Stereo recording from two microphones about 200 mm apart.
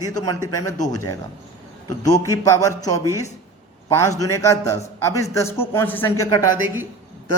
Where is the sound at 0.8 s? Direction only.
40° left (ahead or behind).